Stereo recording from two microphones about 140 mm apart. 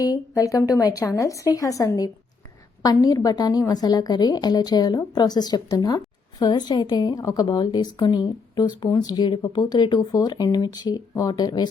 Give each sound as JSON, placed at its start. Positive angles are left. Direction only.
{"t": 0.0, "sound": "a woman's voice", "side_deg": 25}